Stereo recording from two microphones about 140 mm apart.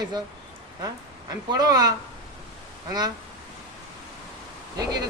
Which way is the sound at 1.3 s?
30° right (ahead or behind).